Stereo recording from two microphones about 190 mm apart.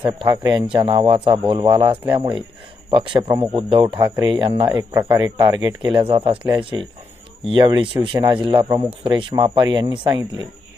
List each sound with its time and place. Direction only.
0.0 s speech: 25° right (ahead or behind)